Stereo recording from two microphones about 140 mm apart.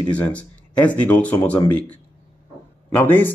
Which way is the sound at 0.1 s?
10° left (ahead or behind).